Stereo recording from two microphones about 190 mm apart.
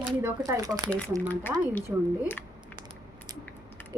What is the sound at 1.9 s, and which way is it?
Speech, 10° right (ahead or behind).